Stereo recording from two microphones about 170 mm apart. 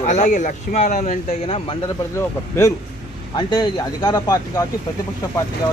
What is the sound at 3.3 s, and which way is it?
Speech, 25° left (ahead or behind).